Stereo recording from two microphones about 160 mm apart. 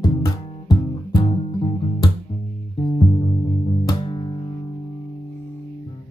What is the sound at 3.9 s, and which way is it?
Music, 30° left (ahead or behind).